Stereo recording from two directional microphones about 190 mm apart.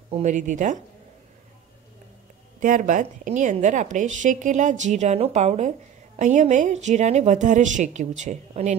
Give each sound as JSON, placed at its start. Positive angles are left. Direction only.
{"t": 0.1, "sound": "a woman's voice", "side_deg": -40}
{"t": 2.6, "sound": "a woman's voice", "side_deg": -40}